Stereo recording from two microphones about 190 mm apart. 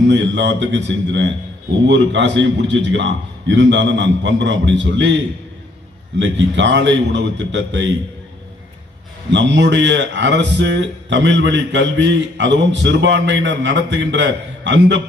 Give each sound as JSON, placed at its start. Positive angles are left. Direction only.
{"t": 0.1, "sound": "a man's voice", "side_deg": -70}
{"t": 6.1, "sound": "a man's voice", "side_deg": -70}
{"t": 9.3, "sound": "a man's voice", "side_deg": -70}